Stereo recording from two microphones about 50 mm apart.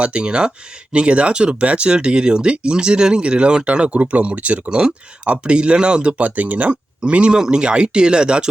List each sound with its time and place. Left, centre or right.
0.0 s speech: right
7.0 s speech: right